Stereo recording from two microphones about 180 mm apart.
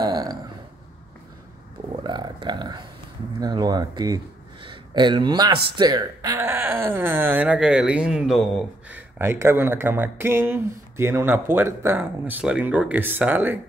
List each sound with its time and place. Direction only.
0.0 s burping: 20° right (ahead or behind)
2.0 s a sound: 25° right (ahead or behind)
3.3 s a man's voice: 20° right (ahead or behind)